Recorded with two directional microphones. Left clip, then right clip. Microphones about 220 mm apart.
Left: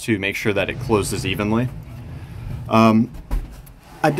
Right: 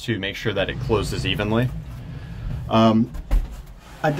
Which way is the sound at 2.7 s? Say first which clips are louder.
Left 2 dB; 15° left (ahead or behind).